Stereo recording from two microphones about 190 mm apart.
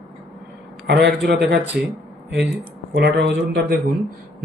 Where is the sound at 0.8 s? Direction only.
65° right (ahead or behind).